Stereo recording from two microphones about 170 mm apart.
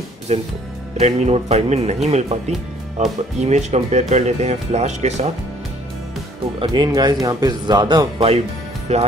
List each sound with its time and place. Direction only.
0.3 s speech: 40° right (ahead or behind)
6.6 s speech: 25° right (ahead or behind)
8.9 s speech: 40° right (ahead or behind)